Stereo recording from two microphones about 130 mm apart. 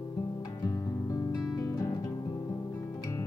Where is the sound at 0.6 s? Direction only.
25° left (ahead or behind).